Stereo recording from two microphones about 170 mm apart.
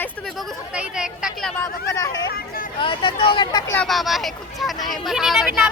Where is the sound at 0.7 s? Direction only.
5° right (ahead or behind).